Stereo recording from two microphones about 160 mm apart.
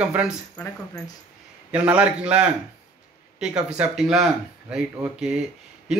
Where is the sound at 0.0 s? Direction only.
10° right (ahead or behind).